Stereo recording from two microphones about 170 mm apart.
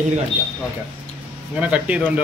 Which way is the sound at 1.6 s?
5° right (ahead or behind).